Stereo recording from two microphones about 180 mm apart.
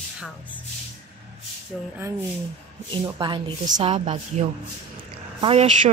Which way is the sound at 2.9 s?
25° right (ahead or behind).